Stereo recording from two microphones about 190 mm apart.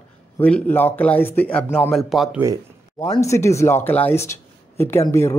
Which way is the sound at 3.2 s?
15° left (ahead or behind).